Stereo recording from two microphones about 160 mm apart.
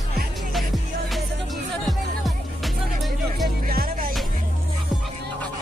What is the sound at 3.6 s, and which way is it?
Music, 65° right (ahead or behind).